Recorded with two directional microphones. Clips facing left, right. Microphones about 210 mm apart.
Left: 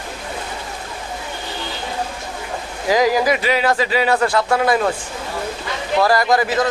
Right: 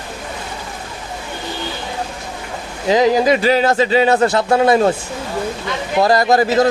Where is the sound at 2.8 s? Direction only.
20° right (ahead or behind).